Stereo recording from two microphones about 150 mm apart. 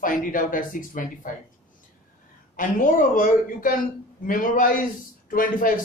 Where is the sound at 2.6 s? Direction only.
65° left (ahead or behind).